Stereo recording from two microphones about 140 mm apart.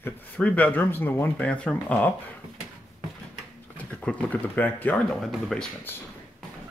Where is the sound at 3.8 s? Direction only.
10° left (ahead or behind).